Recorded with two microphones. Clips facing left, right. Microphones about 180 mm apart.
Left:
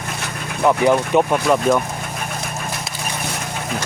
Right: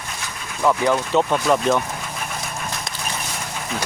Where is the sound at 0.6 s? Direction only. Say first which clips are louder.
Left 3 dB; 15° left (ahead or behind).